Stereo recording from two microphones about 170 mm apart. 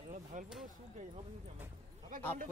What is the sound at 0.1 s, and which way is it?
Speech, 50° right (ahead or behind).